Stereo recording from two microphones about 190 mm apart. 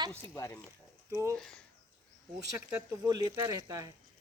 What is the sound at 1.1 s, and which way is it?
Speech, 15° right (ahead or behind).